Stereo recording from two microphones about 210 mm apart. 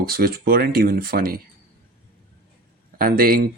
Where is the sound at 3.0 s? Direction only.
45° right (ahead or behind).